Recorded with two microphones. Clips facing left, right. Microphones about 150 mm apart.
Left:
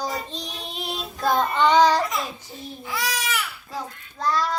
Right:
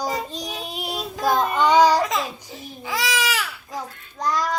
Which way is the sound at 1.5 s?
10° right (ahead or behind).